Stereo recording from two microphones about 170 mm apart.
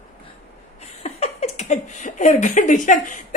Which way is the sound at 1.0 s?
40° left (ahead or behind).